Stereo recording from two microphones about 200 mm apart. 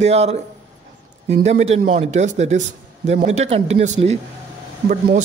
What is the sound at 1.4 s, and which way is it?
A man's voice, 35° right (ahead or behind).